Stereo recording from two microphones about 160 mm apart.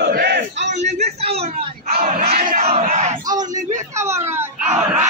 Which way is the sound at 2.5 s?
50° right (ahead or behind).